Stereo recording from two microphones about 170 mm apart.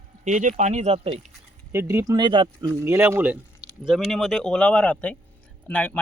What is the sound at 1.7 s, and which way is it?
Speech, 15° right (ahead or behind).